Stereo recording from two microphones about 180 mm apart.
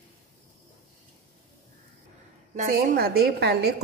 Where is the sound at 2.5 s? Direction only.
55° right (ahead or behind).